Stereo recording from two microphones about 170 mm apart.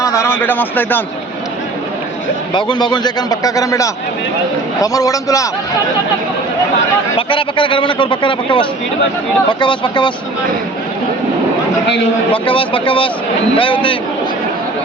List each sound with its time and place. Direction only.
0.0 s a sound: 15° left (ahead or behind)
2.5 s a man's voice: 25° left (ahead or behind)
7.2 s a man's voice: 30° left (ahead or behind)
12.5 s speech: 30° left (ahead or behind)